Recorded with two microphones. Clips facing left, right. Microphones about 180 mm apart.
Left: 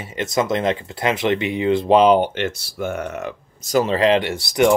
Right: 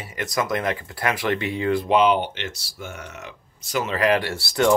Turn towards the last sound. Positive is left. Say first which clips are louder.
# left 3 dB
turn(degrees=15)  # may be behind; listen again after turning